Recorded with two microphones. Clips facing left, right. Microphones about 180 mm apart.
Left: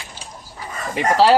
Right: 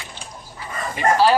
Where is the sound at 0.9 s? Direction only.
75° left (ahead or behind).